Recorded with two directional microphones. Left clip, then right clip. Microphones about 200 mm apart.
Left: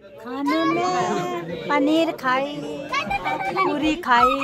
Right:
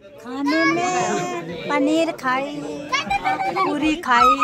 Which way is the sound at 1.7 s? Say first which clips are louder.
Even; 15° left (ahead or behind).